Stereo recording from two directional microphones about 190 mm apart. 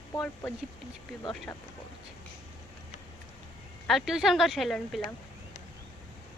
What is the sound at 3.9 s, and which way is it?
Speech, centre (ahead or behind).